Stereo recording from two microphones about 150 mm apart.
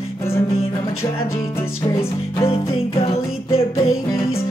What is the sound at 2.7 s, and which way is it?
Music, 40° left (ahead or behind).